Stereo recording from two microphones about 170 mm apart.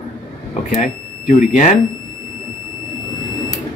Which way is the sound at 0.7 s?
50° left (ahead or behind).